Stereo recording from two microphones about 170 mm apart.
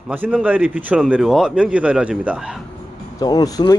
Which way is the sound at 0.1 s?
5° right (ahead or behind).